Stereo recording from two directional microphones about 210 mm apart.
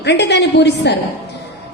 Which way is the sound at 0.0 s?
55° left (ahead or behind).